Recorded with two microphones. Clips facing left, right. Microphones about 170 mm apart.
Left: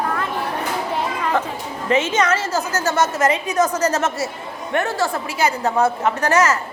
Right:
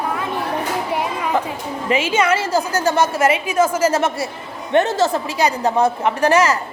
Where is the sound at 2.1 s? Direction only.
10° right (ahead or behind).